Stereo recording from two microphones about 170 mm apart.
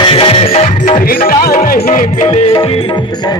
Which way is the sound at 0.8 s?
50° left (ahead or behind).